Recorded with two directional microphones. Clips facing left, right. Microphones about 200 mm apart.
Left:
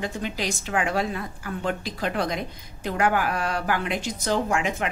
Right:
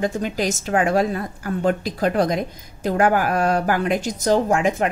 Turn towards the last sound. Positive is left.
turn(degrees=-40)  # may be behind; listen again after turning